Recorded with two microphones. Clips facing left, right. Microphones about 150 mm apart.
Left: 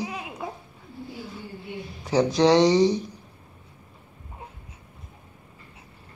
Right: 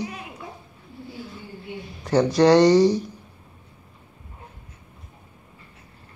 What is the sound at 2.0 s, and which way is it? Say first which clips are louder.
Speech: right 3 dB; centre (ahead or behind).